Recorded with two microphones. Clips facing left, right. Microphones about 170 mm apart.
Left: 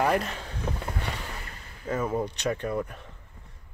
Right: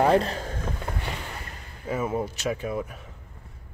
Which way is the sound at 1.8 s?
10° right (ahead or behind).